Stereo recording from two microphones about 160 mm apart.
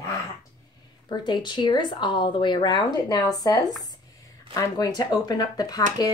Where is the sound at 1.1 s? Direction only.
30° left (ahead or behind).